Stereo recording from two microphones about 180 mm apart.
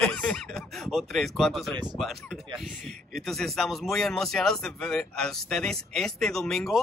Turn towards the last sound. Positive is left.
turn(degrees=0)  # may be behind; listen again after turning